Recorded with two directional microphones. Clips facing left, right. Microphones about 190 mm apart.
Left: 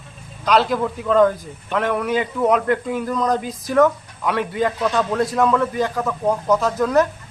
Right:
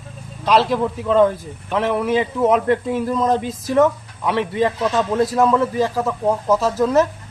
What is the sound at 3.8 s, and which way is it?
A man's voice, centre (ahead or behind).